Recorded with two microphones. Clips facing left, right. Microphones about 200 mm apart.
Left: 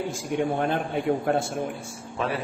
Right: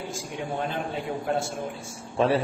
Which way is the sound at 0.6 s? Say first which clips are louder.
Left 4 dB; 55° left (ahead or behind).